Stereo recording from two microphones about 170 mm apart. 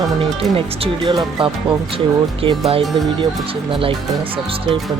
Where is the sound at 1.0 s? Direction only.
30° right (ahead or behind).